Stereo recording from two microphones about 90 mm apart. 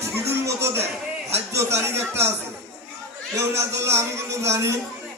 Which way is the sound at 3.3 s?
30° right (ahead or behind).